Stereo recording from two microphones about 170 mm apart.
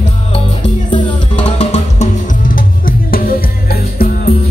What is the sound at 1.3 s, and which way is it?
Music, 40° left (ahead or behind).